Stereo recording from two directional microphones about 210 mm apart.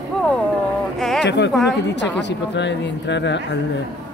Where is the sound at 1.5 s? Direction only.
Centre (ahead or behind).